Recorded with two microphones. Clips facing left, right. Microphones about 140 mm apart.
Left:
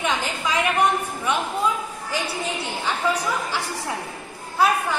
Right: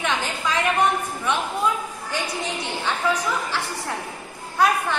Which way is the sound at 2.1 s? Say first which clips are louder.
Left 1 dB; 10° left (ahead or behind).